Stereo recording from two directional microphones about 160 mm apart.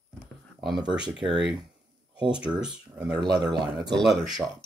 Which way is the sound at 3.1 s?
25° right (ahead or behind).